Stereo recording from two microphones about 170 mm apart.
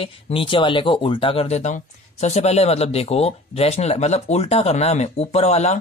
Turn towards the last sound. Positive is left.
turn(degrees=40)  # may be behind; listen again after turning